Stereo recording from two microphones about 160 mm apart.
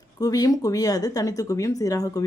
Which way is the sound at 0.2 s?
25° left (ahead or behind).